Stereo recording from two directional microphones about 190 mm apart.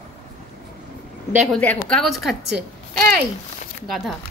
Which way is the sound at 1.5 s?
5° left (ahead or behind).